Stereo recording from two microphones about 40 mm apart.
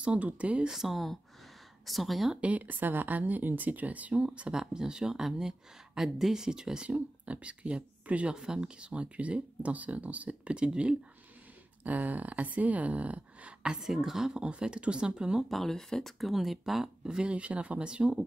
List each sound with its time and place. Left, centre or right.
0.0 s speech: right
0.7 s speech: centre
2.4 s speech: right
4.6 s speech: centre
7.2 s speech: right
11.8 s speech: right
13.7 s speech: centre
14.4 s speech: right
15.4 s speech: centre
15.7 s speech: centre
16.2 s speech: centre
17.2 s speech: right